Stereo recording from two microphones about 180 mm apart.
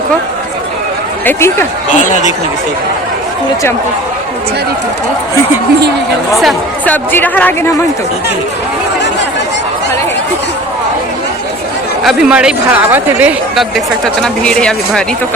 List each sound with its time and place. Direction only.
1.2 s speech: 10° left (ahead or behind)
2.0 s speech: 40° left (ahead or behind)
6.3 s speech: centre (ahead or behind)
12.0 s speech: 5° right (ahead or behind)